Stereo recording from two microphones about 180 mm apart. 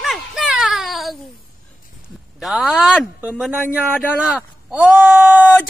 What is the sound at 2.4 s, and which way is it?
Speech, centre (ahead or behind).